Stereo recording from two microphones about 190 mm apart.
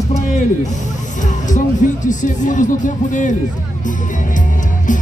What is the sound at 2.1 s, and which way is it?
Speech, 40° left (ahead or behind).